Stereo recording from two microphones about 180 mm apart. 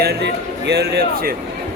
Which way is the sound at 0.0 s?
60° right (ahead or behind).